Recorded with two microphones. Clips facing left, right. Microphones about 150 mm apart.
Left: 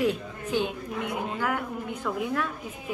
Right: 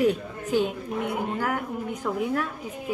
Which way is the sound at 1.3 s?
40° right (ahead or behind).